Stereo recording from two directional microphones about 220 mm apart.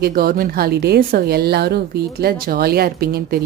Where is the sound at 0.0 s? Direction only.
45° right (ahead or behind).